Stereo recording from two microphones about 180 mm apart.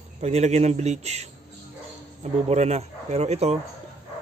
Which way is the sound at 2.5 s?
35° right (ahead or behind).